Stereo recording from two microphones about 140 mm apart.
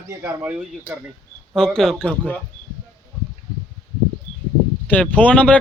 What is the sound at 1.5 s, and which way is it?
Speech, 5° left (ahead or behind).